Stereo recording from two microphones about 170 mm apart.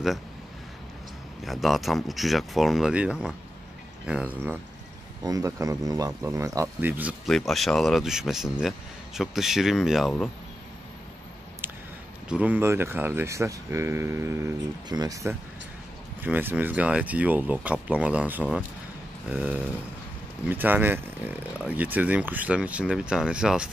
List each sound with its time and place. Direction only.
1.4 s speech: centre (ahead or behind)
5.2 s speech: 20° right (ahead or behind)
7.2 s speech: centre (ahead or behind)
12.3 s speech: 10° right (ahead or behind)
16.2 s speech: 10° right (ahead or behind)